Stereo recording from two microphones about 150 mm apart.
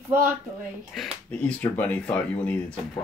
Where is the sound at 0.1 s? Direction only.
15° right (ahead or behind).